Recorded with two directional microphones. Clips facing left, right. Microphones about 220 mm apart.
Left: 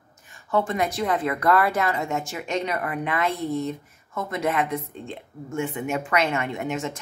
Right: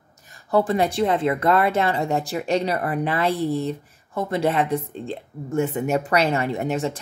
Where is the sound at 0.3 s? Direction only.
35° right (ahead or behind).